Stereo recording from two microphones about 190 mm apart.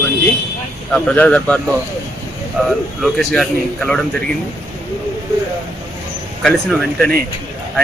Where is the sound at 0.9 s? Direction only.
5° left (ahead or behind).